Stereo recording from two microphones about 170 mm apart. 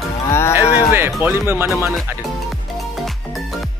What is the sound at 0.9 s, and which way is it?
Speech, 15° right (ahead or behind).